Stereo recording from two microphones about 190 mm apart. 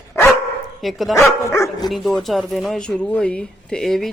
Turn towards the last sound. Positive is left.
turn(degrees=0)  # may be behind; listen again after turning